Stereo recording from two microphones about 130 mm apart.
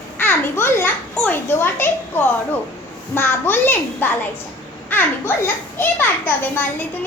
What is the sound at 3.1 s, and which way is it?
A child's voice, 15° left (ahead or behind).